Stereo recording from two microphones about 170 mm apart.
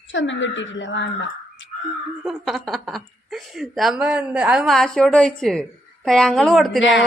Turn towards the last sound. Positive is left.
turn(degrees=90)